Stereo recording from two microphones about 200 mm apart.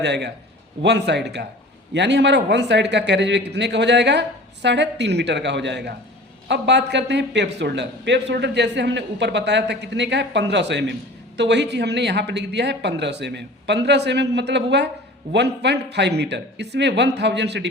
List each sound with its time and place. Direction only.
0.0 s a man's voice: 60° right (ahead or behind)